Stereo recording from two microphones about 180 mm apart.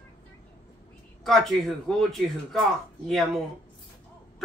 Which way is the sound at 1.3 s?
Centre (ahead or behind).